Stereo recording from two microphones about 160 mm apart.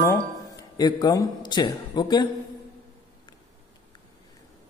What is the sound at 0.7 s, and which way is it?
A man's voice, 25° left (ahead or behind).